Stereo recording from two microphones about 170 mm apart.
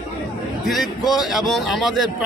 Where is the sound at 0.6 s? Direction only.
Centre (ahead or behind).